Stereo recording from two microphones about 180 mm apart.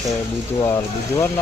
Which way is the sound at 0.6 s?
15° left (ahead or behind).